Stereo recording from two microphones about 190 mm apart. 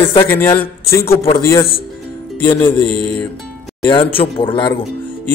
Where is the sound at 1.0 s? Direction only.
50° left (ahead or behind).